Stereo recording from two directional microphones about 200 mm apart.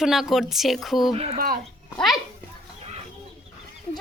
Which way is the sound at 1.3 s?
45° right (ahead or behind).